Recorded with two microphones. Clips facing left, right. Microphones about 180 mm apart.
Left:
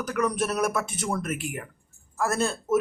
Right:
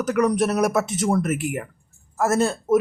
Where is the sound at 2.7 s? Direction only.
35° right (ahead or behind).